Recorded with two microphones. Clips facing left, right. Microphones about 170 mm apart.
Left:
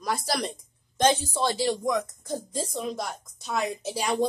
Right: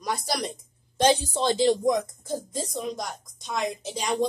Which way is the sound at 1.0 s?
20° right (ahead or behind).